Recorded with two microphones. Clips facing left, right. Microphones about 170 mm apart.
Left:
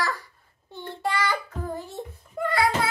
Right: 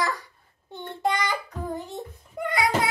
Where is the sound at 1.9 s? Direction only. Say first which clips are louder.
Even; 20° right (ahead or behind).